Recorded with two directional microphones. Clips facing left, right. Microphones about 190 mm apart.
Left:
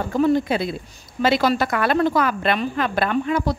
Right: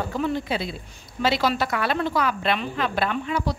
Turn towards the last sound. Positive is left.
turn(degrees=50)  # may be behind; listen again after turning